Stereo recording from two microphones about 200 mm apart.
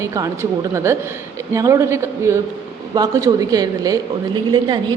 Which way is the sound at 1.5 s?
15° right (ahead or behind).